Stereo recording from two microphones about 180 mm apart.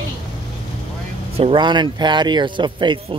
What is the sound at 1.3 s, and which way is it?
Speech, 30° right (ahead or behind).